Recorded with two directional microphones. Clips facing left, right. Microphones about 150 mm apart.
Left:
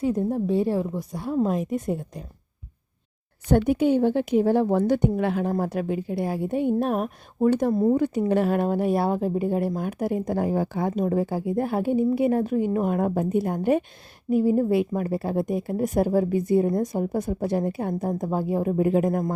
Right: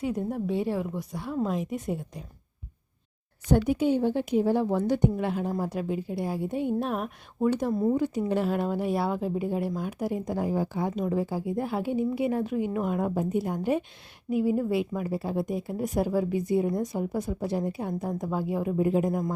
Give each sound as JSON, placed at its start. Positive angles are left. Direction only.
{"t": 0.0, "sound": "a woman's voice", "side_deg": 35}
{"t": 3.5, "sound": "a woman's voice", "side_deg": 60}
{"t": 14.3, "sound": "speech", "side_deg": 45}
{"t": 18.1, "sound": "speech", "side_deg": 40}
{"t": 18.8, "sound": "a woman's voice", "side_deg": 65}